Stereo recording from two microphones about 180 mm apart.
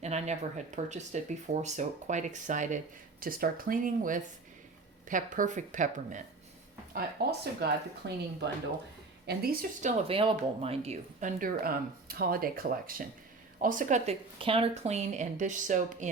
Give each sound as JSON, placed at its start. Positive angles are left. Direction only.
{"t": 0.0, "sound": "speech", "side_deg": -40}
{"t": 6.9, "sound": "speech", "side_deg": -60}
{"t": 10.1, "sound": "speech", "side_deg": -30}